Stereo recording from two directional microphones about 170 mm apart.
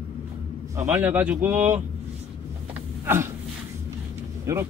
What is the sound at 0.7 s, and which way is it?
Speech, 10° right (ahead or behind).